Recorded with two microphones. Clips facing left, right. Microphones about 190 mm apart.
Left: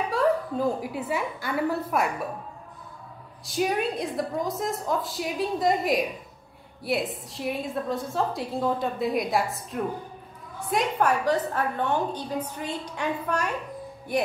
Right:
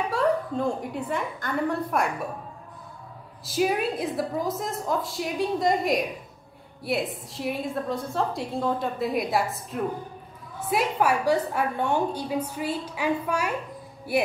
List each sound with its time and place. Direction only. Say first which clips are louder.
0.1 s a woman's voice: left 1 dB; centre (ahead or behind)
3.4 s a woman's voice: right 1 dB; centre (ahead or behind)